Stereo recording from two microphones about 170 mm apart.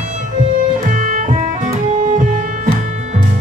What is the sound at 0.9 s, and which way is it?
Music, 50° right (ahead or behind).